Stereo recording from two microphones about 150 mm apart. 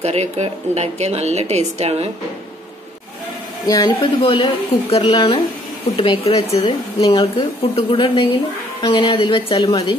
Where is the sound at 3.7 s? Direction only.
30° left (ahead or behind).